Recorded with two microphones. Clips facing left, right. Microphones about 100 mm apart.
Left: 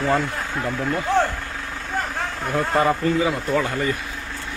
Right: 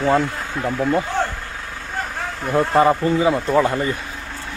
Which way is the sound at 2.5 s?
25° right (ahead or behind).